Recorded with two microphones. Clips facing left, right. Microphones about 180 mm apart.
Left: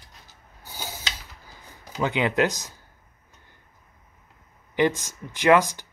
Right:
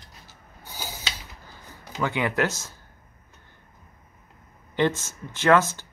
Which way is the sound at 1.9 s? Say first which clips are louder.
Left 2 dB; 20° left (ahead or behind).